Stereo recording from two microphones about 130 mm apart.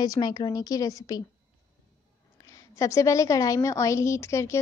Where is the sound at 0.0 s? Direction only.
30° left (ahead or behind).